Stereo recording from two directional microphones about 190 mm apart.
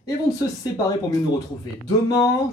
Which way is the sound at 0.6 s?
20° left (ahead or behind).